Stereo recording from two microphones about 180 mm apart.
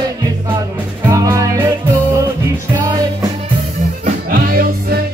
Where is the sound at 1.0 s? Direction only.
20° right (ahead or behind).